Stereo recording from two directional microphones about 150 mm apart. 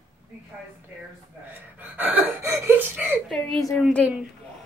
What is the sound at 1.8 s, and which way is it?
Gasp, 10° right (ahead or behind).